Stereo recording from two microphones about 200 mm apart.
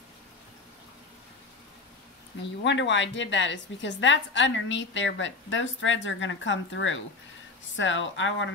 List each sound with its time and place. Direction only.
2.6 s a woman's voice: 65° left (ahead or behind)